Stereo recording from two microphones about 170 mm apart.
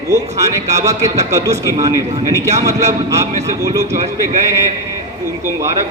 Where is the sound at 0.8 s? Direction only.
20° right (ahead or behind).